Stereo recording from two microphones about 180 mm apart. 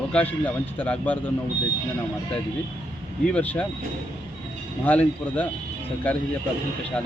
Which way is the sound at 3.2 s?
5° left (ahead or behind).